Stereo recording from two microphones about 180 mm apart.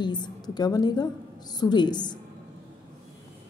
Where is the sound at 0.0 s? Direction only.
25° left (ahead or behind).